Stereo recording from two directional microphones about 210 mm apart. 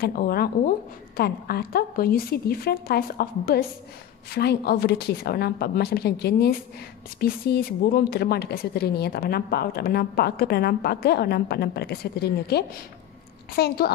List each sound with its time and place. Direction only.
0.0 s speech: 45° left (ahead or behind)